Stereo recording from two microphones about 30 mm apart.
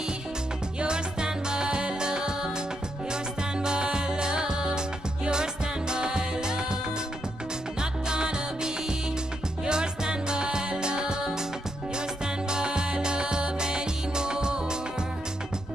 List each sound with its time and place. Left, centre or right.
0.7 s music: right
7.8 s music: right
12.4 s music: right